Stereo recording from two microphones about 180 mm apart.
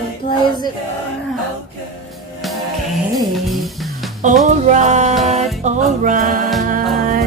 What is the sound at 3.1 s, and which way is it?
Music, centre (ahead or behind).